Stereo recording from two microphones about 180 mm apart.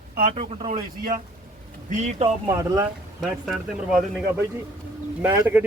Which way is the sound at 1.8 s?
40° right (ahead or behind).